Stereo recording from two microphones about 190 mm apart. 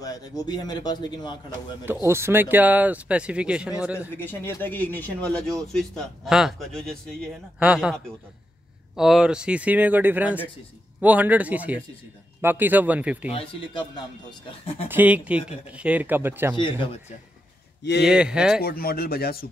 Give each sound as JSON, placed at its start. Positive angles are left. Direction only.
{"t": 0.0, "sound": "speech", "side_deg": 20}
{"t": 2.0, "sound": "speech", "side_deg": -15}
{"t": 4.2, "sound": "speech", "side_deg": 10}
{"t": 13.3, "sound": "speech", "side_deg": 25}
{"t": 14.9, "sound": "speech", "side_deg": -10}
{"t": 16.5, "sound": "speech", "side_deg": 25}
{"t": 18.0, "sound": "speech", "side_deg": -5}
{"t": 18.6, "sound": "speech", "side_deg": 55}